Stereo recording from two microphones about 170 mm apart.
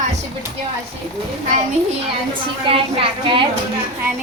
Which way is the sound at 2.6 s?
30° right (ahead or behind).